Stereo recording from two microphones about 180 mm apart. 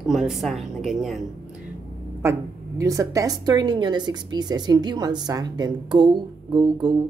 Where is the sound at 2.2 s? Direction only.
15° right (ahead or behind).